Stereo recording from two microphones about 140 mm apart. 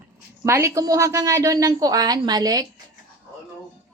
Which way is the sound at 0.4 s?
20° right (ahead or behind).